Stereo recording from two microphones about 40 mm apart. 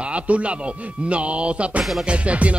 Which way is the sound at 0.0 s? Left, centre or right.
Right.